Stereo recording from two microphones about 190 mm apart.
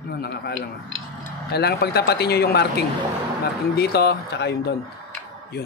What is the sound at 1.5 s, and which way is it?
Speech, 60° left (ahead or behind).